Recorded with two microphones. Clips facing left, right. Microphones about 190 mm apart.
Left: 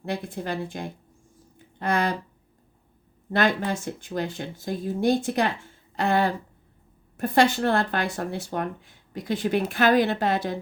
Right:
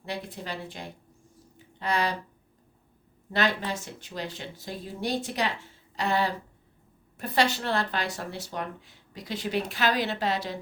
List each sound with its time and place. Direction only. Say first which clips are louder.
0.0 s speech: left 5 dB; 50° left (ahead or behind)
1.5 s a sound: left 3 dB; 50° left (ahead or behind)
3.7 s speech: left 6 dB; 50° left (ahead or behind)